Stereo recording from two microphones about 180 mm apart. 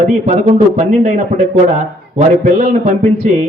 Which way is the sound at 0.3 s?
35° right (ahead or behind).